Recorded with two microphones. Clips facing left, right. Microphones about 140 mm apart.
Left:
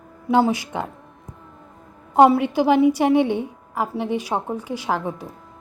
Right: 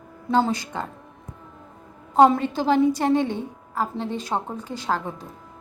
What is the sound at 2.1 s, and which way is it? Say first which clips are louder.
A woman's voice: left 2 dB; 10° left (ahead or behind).